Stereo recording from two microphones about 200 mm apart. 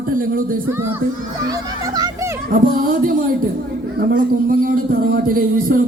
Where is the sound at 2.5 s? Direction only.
45° right (ahead or behind).